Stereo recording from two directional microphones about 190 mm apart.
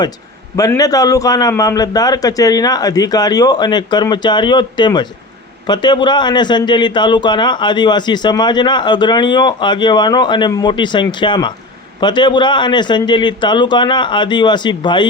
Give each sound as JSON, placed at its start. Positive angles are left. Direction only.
{"t": 0.5, "sound": "a man's voice", "side_deg": 20}